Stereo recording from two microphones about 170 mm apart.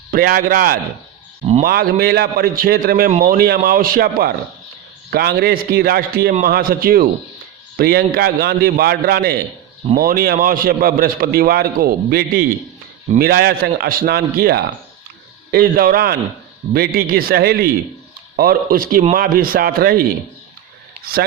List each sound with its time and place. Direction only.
0.1 s a man's voice: 55° right (ahead or behind)